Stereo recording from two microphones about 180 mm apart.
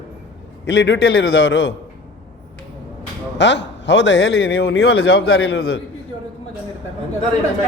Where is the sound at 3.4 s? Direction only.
85° left; by 5.8 s 65° left (ahead or behind).